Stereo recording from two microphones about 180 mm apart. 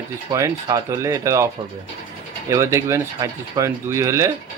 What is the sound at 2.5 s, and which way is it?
Speech, 15° right (ahead or behind).